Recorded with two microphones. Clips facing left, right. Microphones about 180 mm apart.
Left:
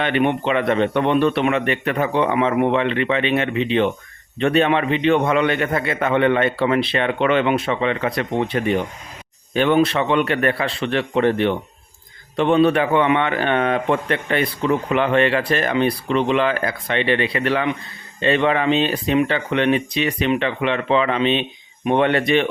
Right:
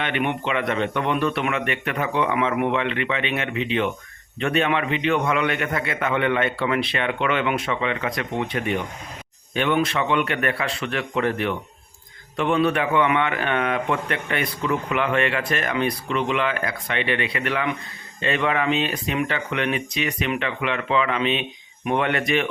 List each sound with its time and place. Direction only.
0.0 s a man's voice: 35° left (ahead or behind)